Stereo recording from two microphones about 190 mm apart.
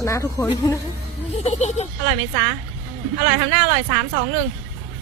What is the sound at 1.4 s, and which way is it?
Speech, 35° left (ahead or behind).